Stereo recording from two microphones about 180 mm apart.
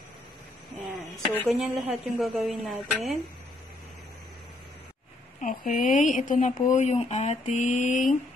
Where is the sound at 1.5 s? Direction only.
Centre (ahead or behind).